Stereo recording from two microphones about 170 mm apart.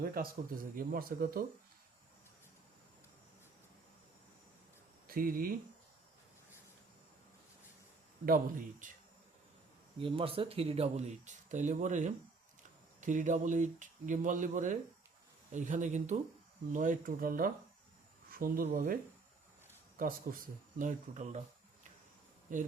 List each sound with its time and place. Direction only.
0.0 s speech: 60° right (ahead or behind)
5.0 s speech: 55° right (ahead or behind)
8.2 s speech: 55° right (ahead or behind)
10.0 s speech: 30° right (ahead or behind); by 17.5 s 55° right (ahead or behind)
18.3 s a sound: 55° right (ahead or behind)
18.7 s speech: 55° right (ahead or behind)
20.0 s speech: 55° right (ahead or behind)